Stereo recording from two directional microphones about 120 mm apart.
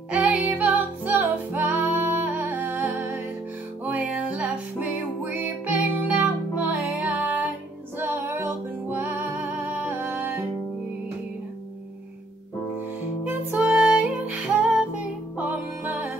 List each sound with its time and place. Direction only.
0.1 s music: 10° right (ahead or behind)
13.3 s music: 15° right (ahead or behind)